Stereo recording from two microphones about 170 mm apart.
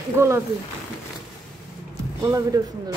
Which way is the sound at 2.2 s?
20° right (ahead or behind).